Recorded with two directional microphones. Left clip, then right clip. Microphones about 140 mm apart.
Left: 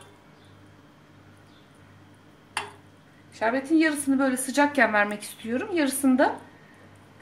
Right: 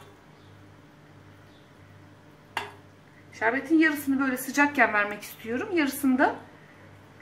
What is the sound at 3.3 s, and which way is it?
A woman's voice, 50° left (ahead or behind).